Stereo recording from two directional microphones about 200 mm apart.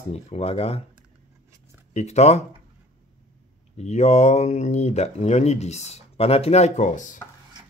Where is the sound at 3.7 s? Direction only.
35° left (ahead or behind).